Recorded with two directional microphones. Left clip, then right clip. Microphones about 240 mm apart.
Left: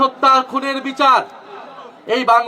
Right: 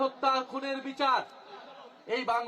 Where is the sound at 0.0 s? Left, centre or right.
Left.